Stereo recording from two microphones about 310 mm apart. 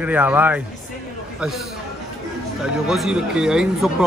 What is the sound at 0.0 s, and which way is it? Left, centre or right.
Speech, centre.